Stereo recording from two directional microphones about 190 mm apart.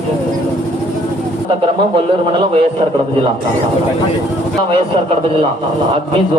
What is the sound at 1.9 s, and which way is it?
Speech, 30° right (ahead or behind).